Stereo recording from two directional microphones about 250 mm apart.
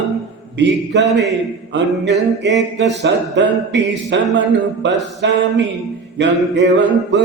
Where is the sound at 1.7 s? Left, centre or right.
Right.